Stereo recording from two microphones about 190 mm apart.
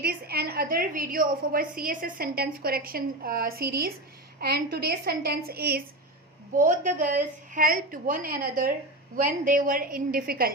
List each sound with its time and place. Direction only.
0.0 s a woman's voice: 55° right (ahead or behind)
6.6 s a woman's voice: 45° right (ahead or behind)